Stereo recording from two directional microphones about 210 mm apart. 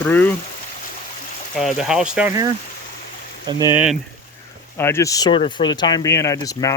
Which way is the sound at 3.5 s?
15° right (ahead or behind).